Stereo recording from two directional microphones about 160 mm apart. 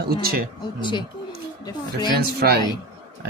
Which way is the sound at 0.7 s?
30° left (ahead or behind).